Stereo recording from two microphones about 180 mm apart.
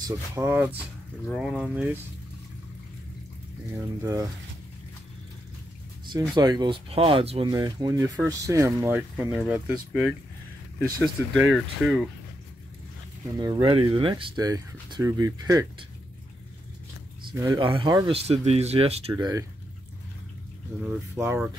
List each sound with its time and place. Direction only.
0.0 s speech: 10° right (ahead or behind)
3.7 s speech: 15° right (ahead or behind)
6.0 s speech: 25° right (ahead or behind)
9.1 s speech: centre (ahead or behind)
11.3 s speech: centre (ahead or behind)
13.4 s speech: 25° right (ahead or behind)
17.3 s speech: 20° right (ahead or behind)
19.1 s speech: 20° right (ahead or behind)
21.2 s speech: 15° right (ahead or behind)